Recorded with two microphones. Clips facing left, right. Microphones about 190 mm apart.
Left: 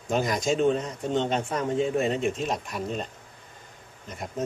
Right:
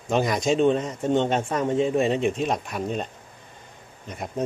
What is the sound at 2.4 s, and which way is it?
Speech, 55° right (ahead or behind).